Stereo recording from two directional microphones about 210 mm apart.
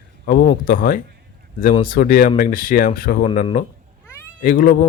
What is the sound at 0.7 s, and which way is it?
A man's voice, 40° left (ahead or behind).